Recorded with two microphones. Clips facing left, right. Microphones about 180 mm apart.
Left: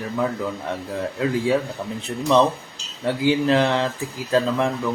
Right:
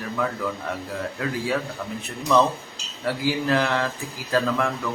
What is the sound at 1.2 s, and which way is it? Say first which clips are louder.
A man's voice: left 6 dB; 25° left (ahead or behind).